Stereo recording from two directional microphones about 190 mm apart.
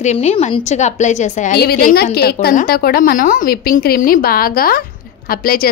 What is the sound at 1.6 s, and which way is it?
A woman's voice, 55° left (ahead or behind).